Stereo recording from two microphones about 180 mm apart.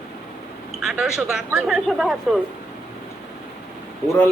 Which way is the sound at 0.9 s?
Centre (ahead or behind).